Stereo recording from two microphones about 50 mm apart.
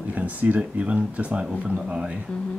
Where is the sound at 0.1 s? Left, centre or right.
Right.